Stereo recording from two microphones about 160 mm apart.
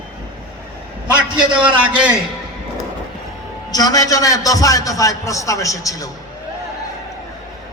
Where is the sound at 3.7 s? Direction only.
25° left (ahead or behind).